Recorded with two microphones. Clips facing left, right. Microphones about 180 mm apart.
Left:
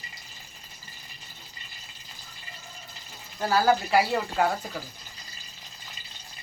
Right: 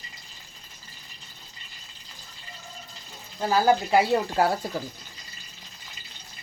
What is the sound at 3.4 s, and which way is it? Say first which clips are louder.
Speech: right 1 dB; 15° right (ahead or behind).